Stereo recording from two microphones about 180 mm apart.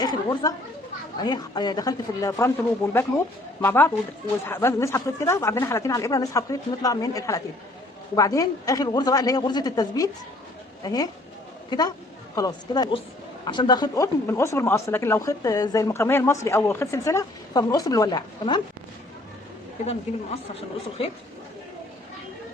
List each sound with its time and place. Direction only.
0.0 s speech: 20° left (ahead or behind)
19.8 s a woman's voice: 35° left (ahead or behind)